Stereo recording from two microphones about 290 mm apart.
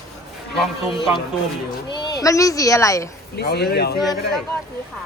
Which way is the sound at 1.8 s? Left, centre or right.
Centre.